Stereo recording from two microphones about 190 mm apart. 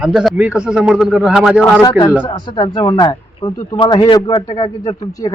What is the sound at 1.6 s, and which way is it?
A man's voice, 15° left (ahead or behind).